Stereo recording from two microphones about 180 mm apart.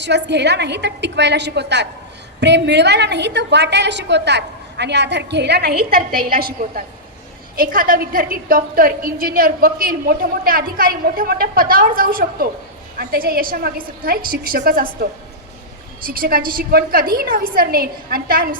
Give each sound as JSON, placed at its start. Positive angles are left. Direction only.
{"t": 0.0, "sound": "a woman's voice", "side_deg": -70}
{"t": 16.0, "sound": "a woman's voice", "side_deg": -55}